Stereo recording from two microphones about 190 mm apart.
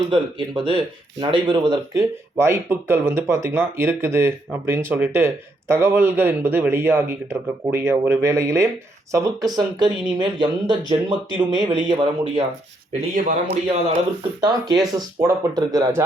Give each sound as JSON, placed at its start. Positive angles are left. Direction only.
{"t": 0.1, "sound": "speech", "side_deg": -25}
{"t": 14.9, "sound": "speech", "side_deg": -20}